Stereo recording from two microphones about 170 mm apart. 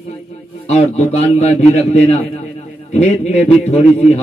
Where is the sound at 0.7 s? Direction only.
40° left (ahead or behind).